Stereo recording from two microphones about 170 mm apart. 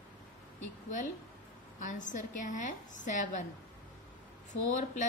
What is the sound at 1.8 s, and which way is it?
A woman's voice, 50° left (ahead or behind).